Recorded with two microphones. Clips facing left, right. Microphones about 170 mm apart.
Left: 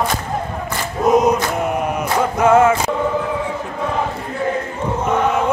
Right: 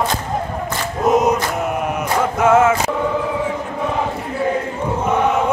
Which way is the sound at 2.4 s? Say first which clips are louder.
Left 1 dB; 5° right (ahead or behind).